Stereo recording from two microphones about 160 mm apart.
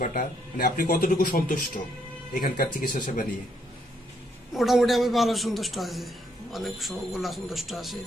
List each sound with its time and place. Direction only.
0.0 s speech: 60° left (ahead or behind)
4.6 s a man's voice: centre (ahead or behind)